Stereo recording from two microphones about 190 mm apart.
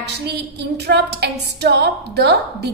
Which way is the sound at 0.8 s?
60° right (ahead or behind).